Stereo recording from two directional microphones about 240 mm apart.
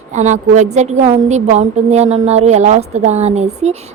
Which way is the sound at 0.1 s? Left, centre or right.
Right.